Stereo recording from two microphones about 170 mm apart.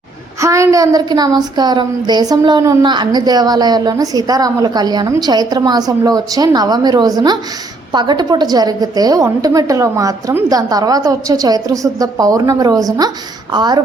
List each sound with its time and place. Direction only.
0.4 s speech: 15° right (ahead or behind)